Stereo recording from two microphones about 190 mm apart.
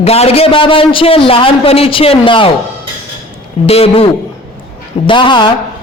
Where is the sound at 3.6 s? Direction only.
30° left (ahead or behind).